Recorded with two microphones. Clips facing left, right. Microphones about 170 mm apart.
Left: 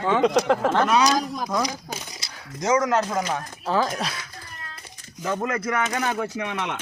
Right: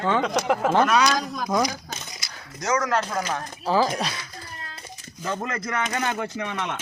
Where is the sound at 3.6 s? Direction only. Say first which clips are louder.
Right 2 dB; centre (ahead or behind).